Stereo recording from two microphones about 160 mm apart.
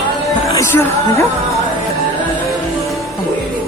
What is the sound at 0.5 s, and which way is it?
Music, 15° left (ahead or behind).